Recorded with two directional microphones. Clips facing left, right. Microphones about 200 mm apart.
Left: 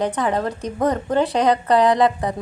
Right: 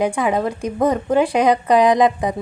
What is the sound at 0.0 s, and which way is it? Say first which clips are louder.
A woman's voice: right 2 dB; 10° right (ahead or behind).